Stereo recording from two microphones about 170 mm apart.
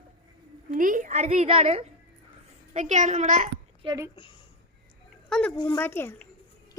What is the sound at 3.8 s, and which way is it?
Speech, 20° right (ahead or behind).